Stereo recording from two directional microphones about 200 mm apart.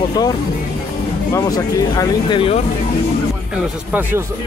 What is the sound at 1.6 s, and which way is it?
Speech, 15° left (ahead or behind).